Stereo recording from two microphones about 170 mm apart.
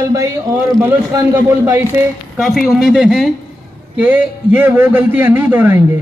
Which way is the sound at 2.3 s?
Centre (ahead or behind).